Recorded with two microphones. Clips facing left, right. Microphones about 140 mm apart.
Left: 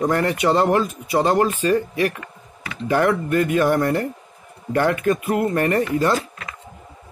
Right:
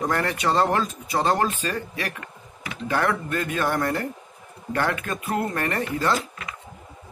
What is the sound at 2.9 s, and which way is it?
Speech, 15° left (ahead or behind).